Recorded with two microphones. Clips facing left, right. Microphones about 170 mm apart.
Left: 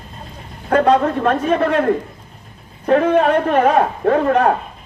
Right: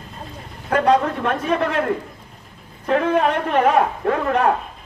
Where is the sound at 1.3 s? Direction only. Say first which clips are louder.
Left 5 dB; 35° left (ahead or behind).